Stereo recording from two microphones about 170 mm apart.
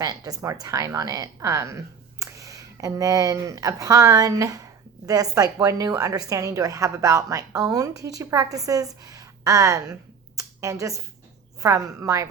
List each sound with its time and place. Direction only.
0.0 s a woman's voice: 20° right (ahead or behind)